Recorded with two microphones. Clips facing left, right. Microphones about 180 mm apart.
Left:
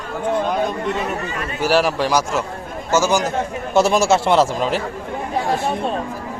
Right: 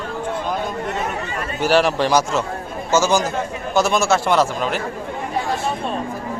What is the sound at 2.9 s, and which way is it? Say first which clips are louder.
Speech: even; 15° left (ahead or behind).